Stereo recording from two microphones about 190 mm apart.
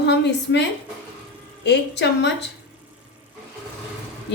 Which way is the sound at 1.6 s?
65° left (ahead or behind).